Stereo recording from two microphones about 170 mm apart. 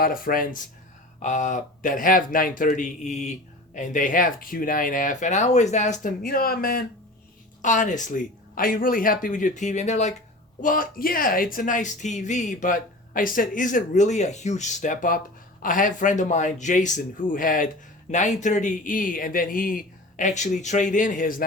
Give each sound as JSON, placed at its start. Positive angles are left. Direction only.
{"t": 0.0, "sound": "speech", "side_deg": 55}
{"t": 7.6, "sound": "speech", "side_deg": 45}
{"t": 10.6, "sound": "speech", "side_deg": 55}